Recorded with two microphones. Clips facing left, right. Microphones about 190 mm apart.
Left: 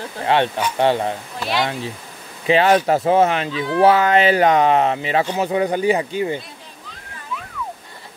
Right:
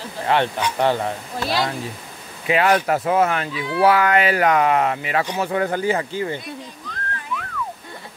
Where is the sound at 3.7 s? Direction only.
25° left (ahead or behind).